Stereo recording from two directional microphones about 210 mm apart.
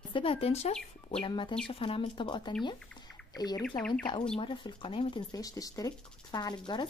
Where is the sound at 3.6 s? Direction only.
5° left (ahead or behind).